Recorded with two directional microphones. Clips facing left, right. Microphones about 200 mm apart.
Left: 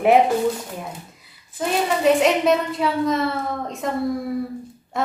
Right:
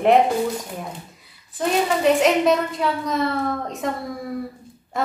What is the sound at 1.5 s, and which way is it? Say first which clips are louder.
A woman's voice: right 1 dB; centre (ahead or behind).